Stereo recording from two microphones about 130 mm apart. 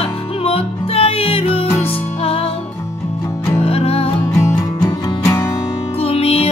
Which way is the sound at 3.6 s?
50° left (ahead or behind).